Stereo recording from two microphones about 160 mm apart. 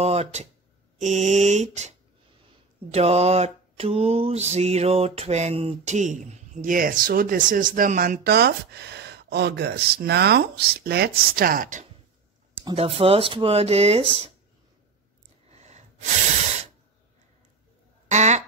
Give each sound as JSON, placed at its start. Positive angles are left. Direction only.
{"t": 0.0, "sound": "speech", "side_deg": -40}
{"t": 0.9, "sound": "mantra", "side_deg": -50}
{"t": 8.2, "sound": "speech", "side_deg": -85}
{"t": 12.7, "sound": "speech", "side_deg": -40}
{"t": 15.5, "sound": "a sound", "side_deg": -45}
{"t": 18.0, "sound": "a sound", "side_deg": -45}